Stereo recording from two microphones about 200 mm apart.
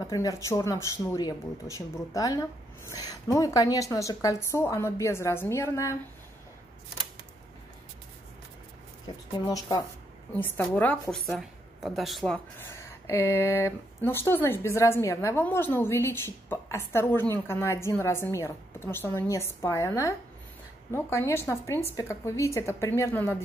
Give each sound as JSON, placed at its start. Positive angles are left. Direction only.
{"t": 0.0, "sound": "speech", "side_deg": 15}
{"t": 9.0, "sound": "speech", "side_deg": 20}
{"t": 10.3, "sound": "a woman's voice", "side_deg": 10}
{"t": 12.5, "sound": "speech", "side_deg": 15}